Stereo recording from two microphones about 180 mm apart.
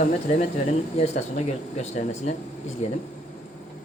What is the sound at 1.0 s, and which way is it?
Speech, 35° left (ahead or behind).